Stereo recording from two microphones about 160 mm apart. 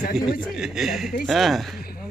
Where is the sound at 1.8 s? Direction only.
70° left (ahead or behind).